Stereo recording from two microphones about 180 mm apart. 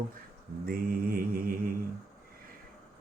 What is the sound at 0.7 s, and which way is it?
Mantra, 55° right (ahead or behind).